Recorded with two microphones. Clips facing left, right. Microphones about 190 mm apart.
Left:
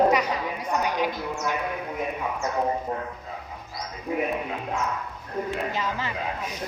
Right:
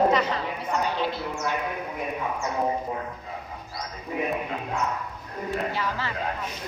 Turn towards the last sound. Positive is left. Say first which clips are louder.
# even
turn(degrees=20)  # may be behind; listen again after turning